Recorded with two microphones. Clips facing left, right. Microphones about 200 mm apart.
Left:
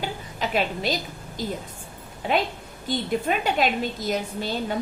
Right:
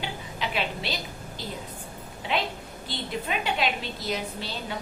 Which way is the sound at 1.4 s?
45° left (ahead or behind).